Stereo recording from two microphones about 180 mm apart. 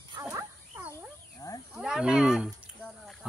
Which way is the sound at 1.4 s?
20° left (ahead or behind).